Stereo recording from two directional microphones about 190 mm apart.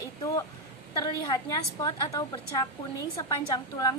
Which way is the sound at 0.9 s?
20° left (ahead or behind).